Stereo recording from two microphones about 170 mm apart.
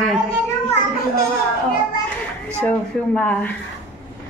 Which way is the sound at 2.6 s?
10° left (ahead or behind).